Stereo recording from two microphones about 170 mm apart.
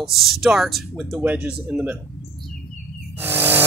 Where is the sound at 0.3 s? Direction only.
Centre (ahead or behind).